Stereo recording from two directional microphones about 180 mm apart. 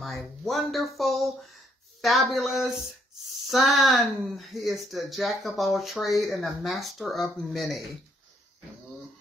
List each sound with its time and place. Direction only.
0.0 s speech: centre (ahead or behind)